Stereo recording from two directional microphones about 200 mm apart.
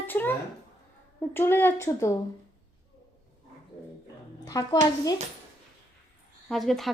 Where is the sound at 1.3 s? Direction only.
10° left (ahead or behind).